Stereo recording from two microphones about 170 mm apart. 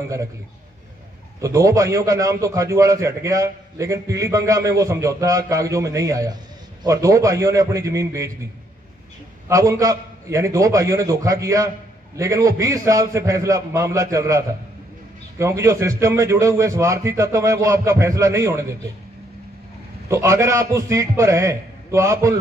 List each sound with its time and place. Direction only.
1.4 s a man's voice: 20° right (ahead or behind)
9.5 s a man's voice: 20° right (ahead or behind)
20.1 s a man's voice: 15° right (ahead or behind)